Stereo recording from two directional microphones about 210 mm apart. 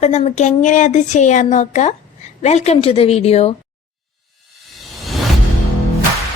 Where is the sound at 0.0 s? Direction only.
30° left (ahead or behind).